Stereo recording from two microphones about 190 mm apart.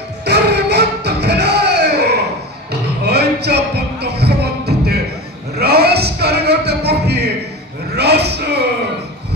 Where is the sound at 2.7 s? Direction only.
60° right (ahead or behind).